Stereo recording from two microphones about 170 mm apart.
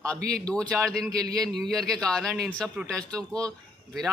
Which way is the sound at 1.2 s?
20° right (ahead or behind).